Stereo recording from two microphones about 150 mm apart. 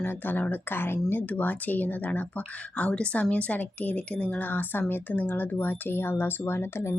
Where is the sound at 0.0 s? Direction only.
15° left (ahead or behind).